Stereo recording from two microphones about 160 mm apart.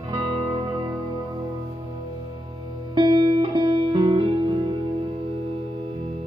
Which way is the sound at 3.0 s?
30° right (ahead or behind).